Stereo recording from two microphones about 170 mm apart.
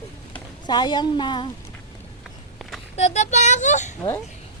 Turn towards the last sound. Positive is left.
turn(degrees=45)  # may be behind; listen again after turning